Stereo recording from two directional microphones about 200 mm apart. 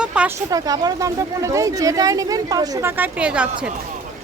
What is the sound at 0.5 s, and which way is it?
Speech, 20° right (ahead or behind).